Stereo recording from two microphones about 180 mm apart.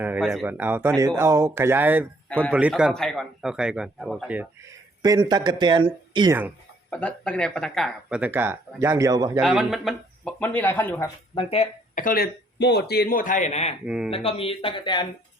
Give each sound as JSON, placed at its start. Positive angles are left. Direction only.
{"t": 0.0, "sound": "a man's voice", "side_deg": -10}
{"t": 5.0, "sound": "speech", "side_deg": -20}
{"t": 6.9, "sound": "a man's voice", "side_deg": 5}
{"t": 8.2, "sound": "speech", "side_deg": -10}
{"t": 9.4, "sound": "speech", "side_deg": 0}
{"t": 10.4, "sound": "speech", "side_deg": 10}
{"t": 11.3, "sound": "speech", "side_deg": 35}
{"t": 11.9, "sound": "a man's voice", "side_deg": 55}
{"t": 13.8, "sound": "a man's voice", "side_deg": -5}
{"t": 14.1, "sound": "speech", "side_deg": 30}